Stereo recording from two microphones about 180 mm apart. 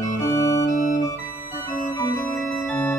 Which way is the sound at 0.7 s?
45° left (ahead or behind).